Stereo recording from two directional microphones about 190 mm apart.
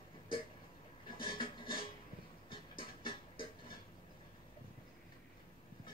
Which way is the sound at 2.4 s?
25° left (ahead or behind).